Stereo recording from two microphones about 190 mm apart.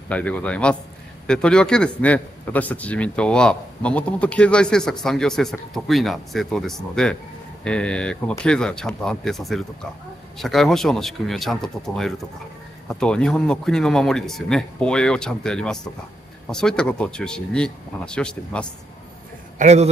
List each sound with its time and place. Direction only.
0.1 s a man's voice: 5° left (ahead or behind)
19.6 s a man's voice: 35° right (ahead or behind)